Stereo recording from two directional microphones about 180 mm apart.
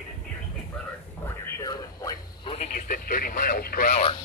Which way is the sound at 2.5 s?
50° left (ahead or behind).